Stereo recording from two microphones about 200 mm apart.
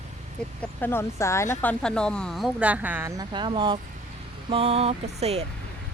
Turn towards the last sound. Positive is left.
turn(degrees=-35)  # may be behind; listen again after turning